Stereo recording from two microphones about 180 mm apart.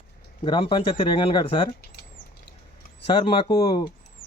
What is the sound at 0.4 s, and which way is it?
Speech, 30° left (ahead or behind).